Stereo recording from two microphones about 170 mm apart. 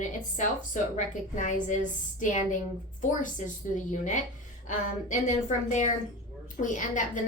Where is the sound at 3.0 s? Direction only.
50° left (ahead or behind).